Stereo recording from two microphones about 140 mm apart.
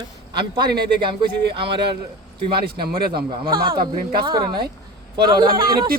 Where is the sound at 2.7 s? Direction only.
90° right.